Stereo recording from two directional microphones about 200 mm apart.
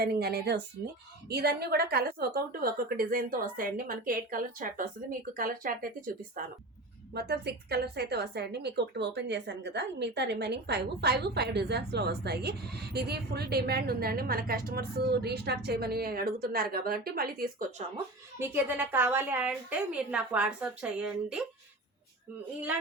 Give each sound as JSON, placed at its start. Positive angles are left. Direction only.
{"t": 0.0, "sound": "a woman's voice", "side_deg": -50}
{"t": 7.1, "sound": "a woman's voice", "side_deg": -55}
{"t": 18.3, "sound": "a woman's voice", "side_deg": -10}